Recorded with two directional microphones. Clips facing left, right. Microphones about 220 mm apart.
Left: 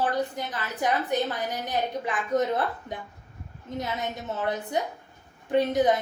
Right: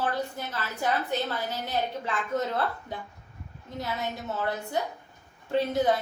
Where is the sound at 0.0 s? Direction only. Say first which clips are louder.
Left 3 dB; 15° left (ahead or behind).